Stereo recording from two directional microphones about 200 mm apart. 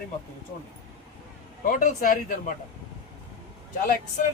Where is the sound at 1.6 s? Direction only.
40° left (ahead or behind).